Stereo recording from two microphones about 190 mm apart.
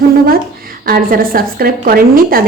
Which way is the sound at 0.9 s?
50° right (ahead or behind).